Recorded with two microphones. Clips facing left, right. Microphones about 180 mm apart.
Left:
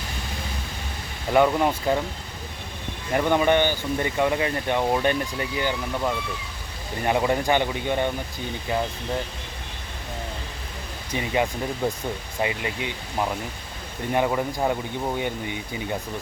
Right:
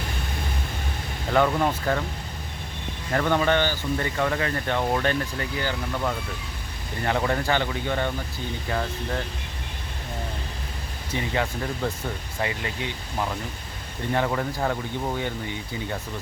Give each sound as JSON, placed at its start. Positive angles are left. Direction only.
{"t": 1.3, "sound": "speech", "side_deg": 15}
{"t": 3.1, "sound": "speech", "side_deg": 15}
{"t": 7.0, "sound": "speech", "side_deg": 15}
{"t": 11.1, "sound": "speech", "side_deg": 15}